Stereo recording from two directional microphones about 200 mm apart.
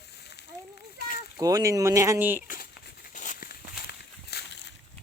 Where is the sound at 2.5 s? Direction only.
50° left (ahead or behind).